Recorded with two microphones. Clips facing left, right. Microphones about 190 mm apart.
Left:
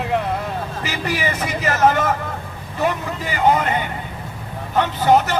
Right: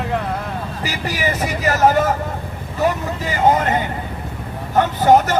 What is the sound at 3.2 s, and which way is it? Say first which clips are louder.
Speech: right 1 dB; 40° right (ahead or behind).